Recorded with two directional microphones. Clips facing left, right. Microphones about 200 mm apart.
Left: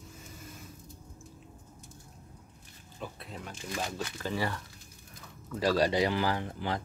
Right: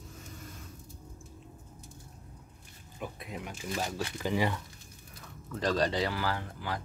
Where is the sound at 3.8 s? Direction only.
15° right (ahead or behind).